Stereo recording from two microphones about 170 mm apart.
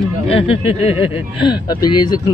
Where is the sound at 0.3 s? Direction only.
35° left (ahead or behind).